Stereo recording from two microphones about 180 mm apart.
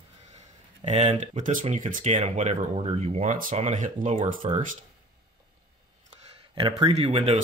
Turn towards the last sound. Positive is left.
turn(degrees=-35)  # may be behind; listen again after turning